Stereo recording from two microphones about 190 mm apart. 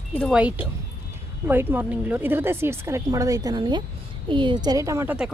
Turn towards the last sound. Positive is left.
turn(degrees=-10)  # may be behind; listen again after turning